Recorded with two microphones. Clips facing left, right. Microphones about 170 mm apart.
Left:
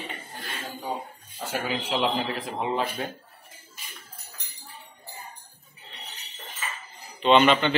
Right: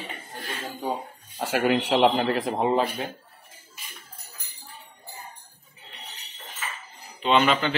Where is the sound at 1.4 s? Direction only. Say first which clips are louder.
Right 7 dB; 70° right (ahead or behind); by 2.8 s 45° right (ahead or behind).